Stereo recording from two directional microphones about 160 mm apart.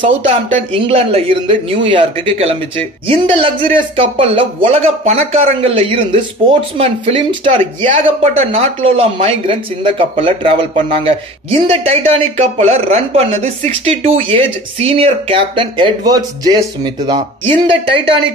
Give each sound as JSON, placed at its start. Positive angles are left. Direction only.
{"t": 0.0, "sound": "speech", "side_deg": -35}